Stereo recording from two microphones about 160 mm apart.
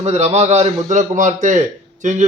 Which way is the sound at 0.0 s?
40° right (ahead or behind).